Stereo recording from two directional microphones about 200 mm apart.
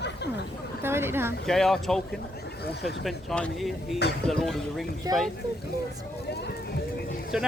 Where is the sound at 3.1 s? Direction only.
5° left (ahead or behind).